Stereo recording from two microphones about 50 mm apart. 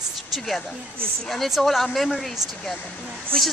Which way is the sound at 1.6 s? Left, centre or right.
Centre.